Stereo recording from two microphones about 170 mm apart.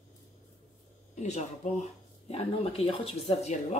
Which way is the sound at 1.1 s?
45° left (ahead or behind).